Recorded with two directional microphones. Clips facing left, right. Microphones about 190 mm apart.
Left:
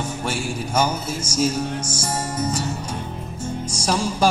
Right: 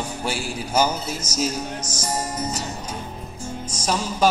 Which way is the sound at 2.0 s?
10° right (ahead or behind).